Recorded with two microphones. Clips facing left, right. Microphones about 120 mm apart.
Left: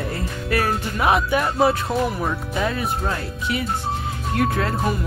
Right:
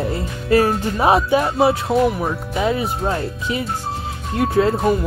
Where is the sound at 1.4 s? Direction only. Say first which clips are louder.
Right 2 dB; 5° right (ahead or behind).